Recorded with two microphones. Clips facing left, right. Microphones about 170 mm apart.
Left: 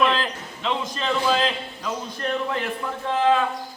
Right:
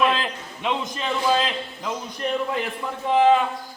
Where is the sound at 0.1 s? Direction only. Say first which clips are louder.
Even; 15° right (ahead or behind).